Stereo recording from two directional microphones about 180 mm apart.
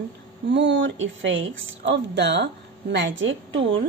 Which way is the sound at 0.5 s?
75° right (ahead or behind).